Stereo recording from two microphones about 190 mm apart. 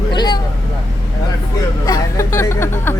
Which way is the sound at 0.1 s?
20° left (ahead or behind).